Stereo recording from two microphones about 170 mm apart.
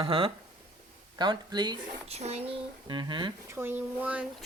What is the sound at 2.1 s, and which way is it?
Speech, 40° right (ahead or behind).